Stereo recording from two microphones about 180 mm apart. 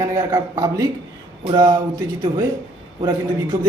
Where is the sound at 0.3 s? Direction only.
20° right (ahead or behind).